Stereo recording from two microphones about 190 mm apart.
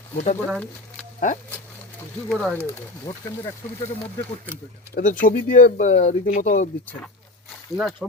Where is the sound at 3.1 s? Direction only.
20° left (ahead or behind).